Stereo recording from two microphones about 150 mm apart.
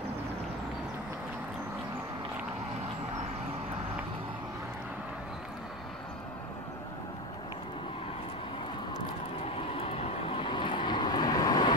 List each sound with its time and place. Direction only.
9.8 s vehicle: 40° left (ahead or behind)